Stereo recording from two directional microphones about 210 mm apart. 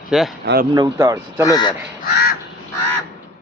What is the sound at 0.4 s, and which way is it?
Speech, 45° right (ahead or behind).